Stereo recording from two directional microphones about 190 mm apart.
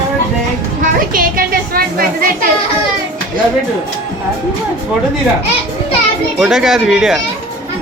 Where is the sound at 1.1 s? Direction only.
50° right (ahead or behind).